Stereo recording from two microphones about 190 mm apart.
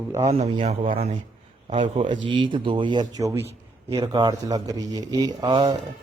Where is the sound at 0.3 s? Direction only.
30° right (ahead or behind).